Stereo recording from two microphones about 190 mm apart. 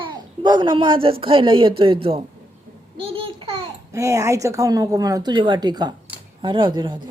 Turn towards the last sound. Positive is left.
turn(degrees=-25)  # may be behind; listen again after turning